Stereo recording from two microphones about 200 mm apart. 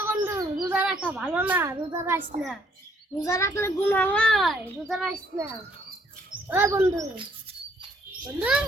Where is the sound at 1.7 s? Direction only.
15° right (ahead or behind).